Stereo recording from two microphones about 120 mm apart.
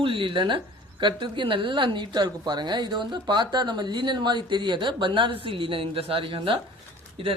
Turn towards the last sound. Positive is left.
turn(degrees=-50)  # may be behind; listen again after turning